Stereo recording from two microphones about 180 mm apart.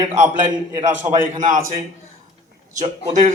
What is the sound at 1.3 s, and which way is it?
Speech, 45° right (ahead or behind).